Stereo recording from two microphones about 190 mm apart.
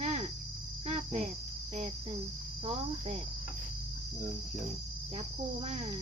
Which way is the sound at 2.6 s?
30° right (ahead or behind).